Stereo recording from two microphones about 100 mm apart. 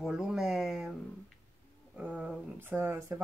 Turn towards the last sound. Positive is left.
turn(degrees=-25)  # may be behind; listen again after turning